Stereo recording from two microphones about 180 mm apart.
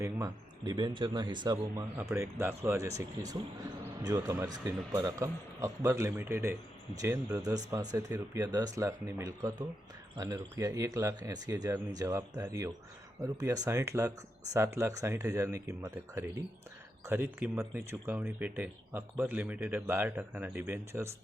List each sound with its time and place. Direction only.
0.0 s speech: 20° right (ahead or behind)
1.8 s speech: 15° right (ahead or behind)